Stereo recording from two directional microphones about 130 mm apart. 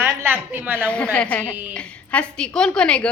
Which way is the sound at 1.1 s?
10° left (ahead or behind).